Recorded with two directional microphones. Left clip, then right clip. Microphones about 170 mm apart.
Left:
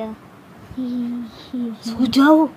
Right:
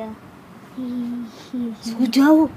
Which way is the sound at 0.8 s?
35° left (ahead or behind).